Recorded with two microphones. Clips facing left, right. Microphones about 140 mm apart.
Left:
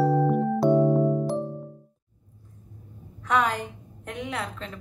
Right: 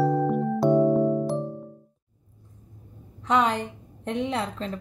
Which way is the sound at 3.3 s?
25° right (ahead or behind).